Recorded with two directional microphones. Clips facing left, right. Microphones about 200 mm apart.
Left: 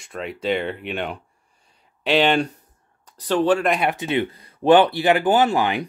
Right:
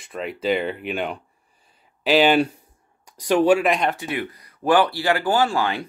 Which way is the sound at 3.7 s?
5° left (ahead or behind).